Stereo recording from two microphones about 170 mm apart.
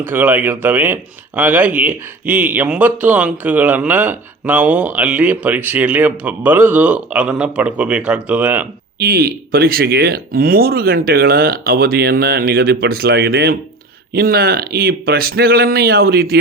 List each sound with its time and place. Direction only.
0.0 s speech: 10° right (ahead or behind)
9.0 s speech: 60° right (ahead or behind)